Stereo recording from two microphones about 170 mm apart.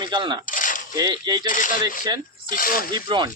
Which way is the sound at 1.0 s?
25° right (ahead or behind).